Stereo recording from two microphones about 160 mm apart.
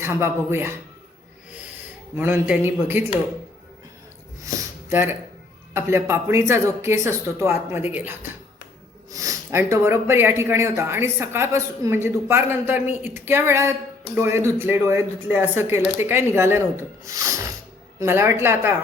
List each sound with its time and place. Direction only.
0.0 s speech: 15° right (ahead or behind)
2.1 s speech: 10° right (ahead or behind)
4.4 s a sound: 15° right (ahead or behind)
5.7 s speech: 15° right (ahead or behind)